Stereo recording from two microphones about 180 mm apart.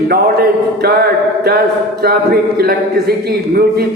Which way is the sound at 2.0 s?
60° right (ahead or behind).